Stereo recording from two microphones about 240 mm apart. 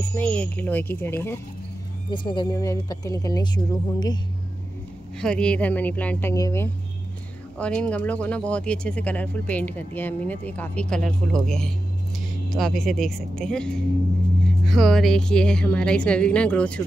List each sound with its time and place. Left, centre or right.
0.2 s speech: centre
5.2 s speech: centre